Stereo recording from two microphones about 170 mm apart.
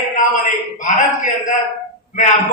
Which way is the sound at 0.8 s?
50° left (ahead or behind).